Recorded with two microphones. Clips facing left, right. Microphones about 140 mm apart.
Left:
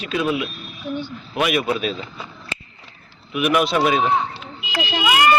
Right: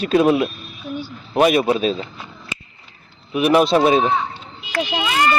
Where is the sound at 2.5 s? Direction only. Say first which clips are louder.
Even; 15° right (ahead or behind).